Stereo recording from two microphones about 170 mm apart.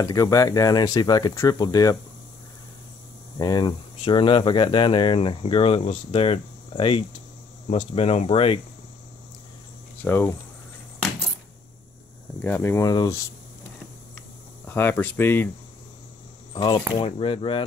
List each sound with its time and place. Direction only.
0.0 s speech: 20° left (ahead or behind)
3.3 s speech: 25° left (ahead or behind)
10.0 s speech: 10° left (ahead or behind)
12.4 s speech: 10° left (ahead or behind)
14.7 s speech: 10° left (ahead or behind)
16.5 s speech: 30° left (ahead or behind)